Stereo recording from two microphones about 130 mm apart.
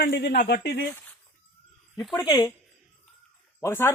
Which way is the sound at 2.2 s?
30° left (ahead or behind).